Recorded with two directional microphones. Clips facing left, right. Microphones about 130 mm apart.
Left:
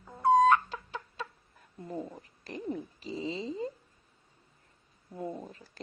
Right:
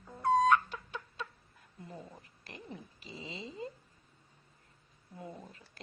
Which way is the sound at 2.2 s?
40° left (ahead or behind).